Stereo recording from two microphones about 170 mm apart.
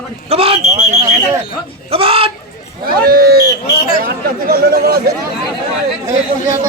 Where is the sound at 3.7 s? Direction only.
60° left (ahead or behind).